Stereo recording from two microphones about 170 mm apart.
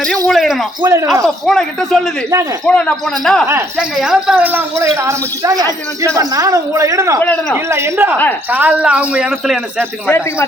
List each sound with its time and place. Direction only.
0.3 s speech: centre (ahead or behind)
0.8 s a woman's voice: 20° right (ahead or behind)
1.2 s a woman's voice: centre (ahead or behind); by 7.2 s 20° right (ahead or behind)
7.2 s speech: 10° left (ahead or behind)
7.5 s speech: 15° right (ahead or behind)
9.7 s speech: 15° left (ahead or behind)